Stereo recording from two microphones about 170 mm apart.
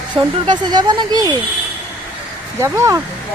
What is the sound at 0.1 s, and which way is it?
Speech, 25° right (ahead or behind).